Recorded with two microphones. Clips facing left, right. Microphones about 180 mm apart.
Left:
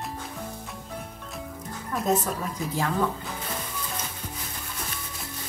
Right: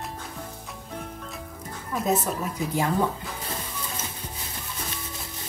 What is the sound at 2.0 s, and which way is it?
Speech, 5° right (ahead or behind).